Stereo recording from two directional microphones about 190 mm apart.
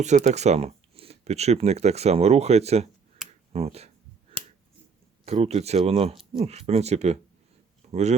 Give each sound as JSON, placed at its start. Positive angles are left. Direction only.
{"t": 0.0, "sound": "speech", "side_deg": -35}
{"t": 5.2, "sound": "speech", "side_deg": -35}